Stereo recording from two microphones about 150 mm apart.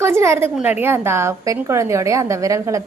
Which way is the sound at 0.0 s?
15° right (ahead or behind).